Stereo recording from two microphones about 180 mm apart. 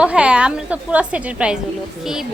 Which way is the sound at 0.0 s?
5° right (ahead or behind).